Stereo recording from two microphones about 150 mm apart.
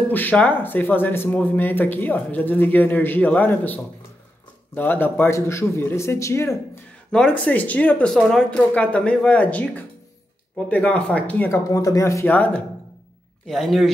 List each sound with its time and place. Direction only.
0.1 s speech: 10° left (ahead or behind)
7.1 s speech: 5° left (ahead or behind)